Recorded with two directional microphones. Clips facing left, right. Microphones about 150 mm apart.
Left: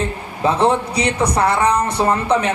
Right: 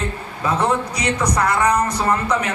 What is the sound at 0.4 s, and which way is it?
A man's voice, 30° left (ahead or behind).